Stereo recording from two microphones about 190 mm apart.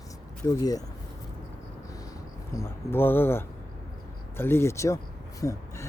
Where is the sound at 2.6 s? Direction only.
10° left (ahead or behind).